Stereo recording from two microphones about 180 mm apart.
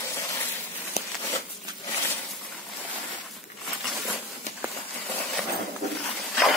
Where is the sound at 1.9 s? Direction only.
15° left (ahead or behind).